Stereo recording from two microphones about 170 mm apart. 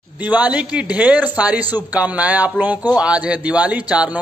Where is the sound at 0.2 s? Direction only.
10° right (ahead or behind).